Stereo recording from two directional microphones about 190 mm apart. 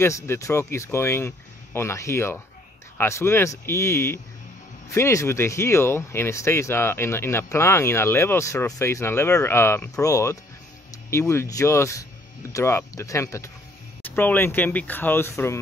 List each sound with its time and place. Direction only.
0.0 s speech: 15° left (ahead or behind)